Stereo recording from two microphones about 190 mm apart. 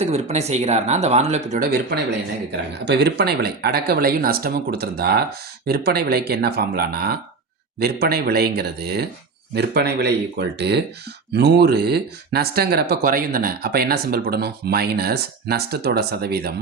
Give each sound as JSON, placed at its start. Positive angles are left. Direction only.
{"t": 0.0, "sound": "speech", "side_deg": -35}
{"t": 1.5, "sound": "speech", "side_deg": -50}
{"t": 2.8, "sound": "speech", "side_deg": -60}